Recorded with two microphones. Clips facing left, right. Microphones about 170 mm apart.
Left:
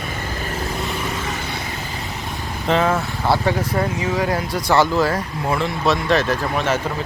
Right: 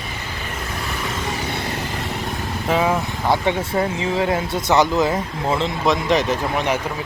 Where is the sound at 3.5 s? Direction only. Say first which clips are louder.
Even; 25° right (ahead or behind).